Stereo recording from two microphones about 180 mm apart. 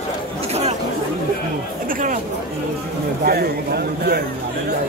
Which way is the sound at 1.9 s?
45° right (ahead or behind).